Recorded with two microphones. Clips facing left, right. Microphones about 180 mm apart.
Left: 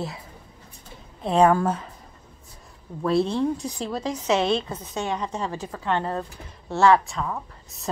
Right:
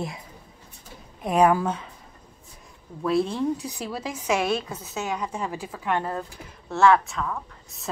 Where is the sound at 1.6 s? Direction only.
5° left (ahead or behind).